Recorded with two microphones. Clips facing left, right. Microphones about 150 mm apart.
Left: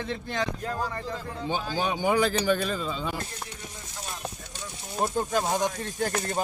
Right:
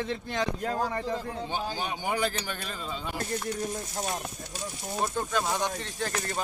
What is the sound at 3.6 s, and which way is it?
Speech, 45° right (ahead or behind).